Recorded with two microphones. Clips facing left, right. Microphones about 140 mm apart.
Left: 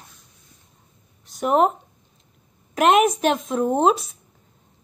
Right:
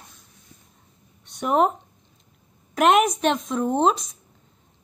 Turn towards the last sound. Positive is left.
turn(degrees=5)  # may be behind; listen again after turning